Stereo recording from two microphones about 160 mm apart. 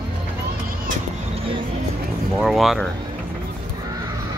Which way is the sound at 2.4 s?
Centre (ahead or behind).